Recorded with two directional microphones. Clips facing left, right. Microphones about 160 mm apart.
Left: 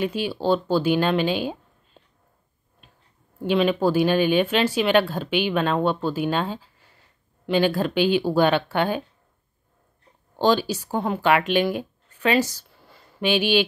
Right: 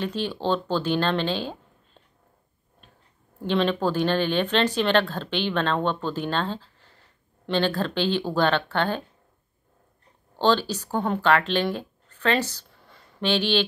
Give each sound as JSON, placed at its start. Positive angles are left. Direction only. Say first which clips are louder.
{"t": 0.0, "sound": "speech", "louder": "left 3 dB", "side_deg": 10}
{"t": 3.4, "sound": "speech", "louder": "left 3 dB", "side_deg": 10}
{"t": 10.4, "sound": "speech", "louder": "left 2 dB", "side_deg": 10}